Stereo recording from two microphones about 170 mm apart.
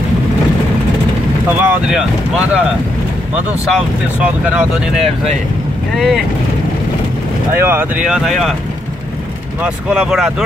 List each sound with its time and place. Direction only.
1.6 s speech: 10° right (ahead or behind)
4.5 s speech: centre (ahead or behind)
7.5 s speech: 15° right (ahead or behind)
9.6 s speech: 5° right (ahead or behind)